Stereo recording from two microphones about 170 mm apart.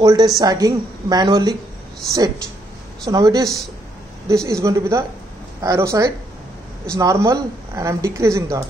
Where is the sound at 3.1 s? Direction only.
20° right (ahead or behind).